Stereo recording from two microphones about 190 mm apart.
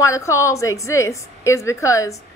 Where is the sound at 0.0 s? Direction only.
15° left (ahead or behind).